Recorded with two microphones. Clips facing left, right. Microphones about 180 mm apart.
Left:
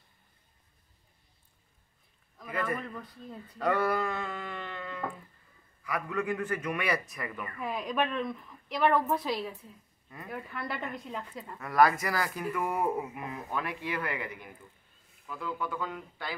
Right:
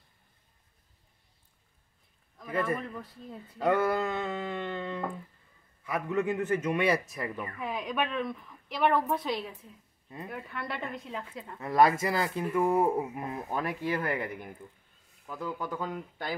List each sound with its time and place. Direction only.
2.5 s a man's voice: 25° right (ahead or behind)
3.4 s a sound: 25° right (ahead or behind)
5.9 s a man's voice: 25° right (ahead or behind)
7.5 s a woman's voice: centre (ahead or behind)
11.6 s a man's voice: 25° right (ahead or behind); by 16.3 s 45° right (ahead or behind)